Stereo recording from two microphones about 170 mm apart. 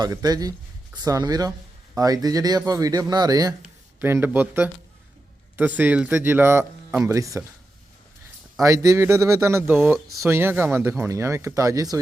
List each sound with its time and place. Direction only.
0.0 s speech: 20° right (ahead or behind)
8.6 s speech: 20° right (ahead or behind)